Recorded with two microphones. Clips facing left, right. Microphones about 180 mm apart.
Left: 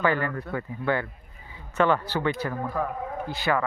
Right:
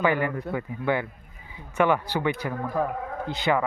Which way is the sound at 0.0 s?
15° right (ahead or behind).